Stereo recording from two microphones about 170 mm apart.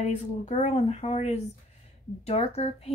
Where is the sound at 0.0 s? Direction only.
45° left (ahead or behind).